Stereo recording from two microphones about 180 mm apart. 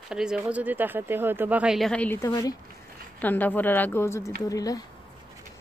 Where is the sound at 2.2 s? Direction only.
20° left (ahead or behind).